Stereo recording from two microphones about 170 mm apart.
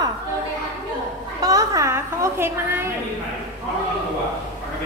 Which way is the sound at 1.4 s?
20° right (ahead or behind).